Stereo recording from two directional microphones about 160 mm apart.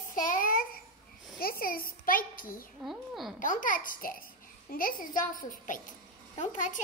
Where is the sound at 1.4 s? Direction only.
65° left (ahead or behind).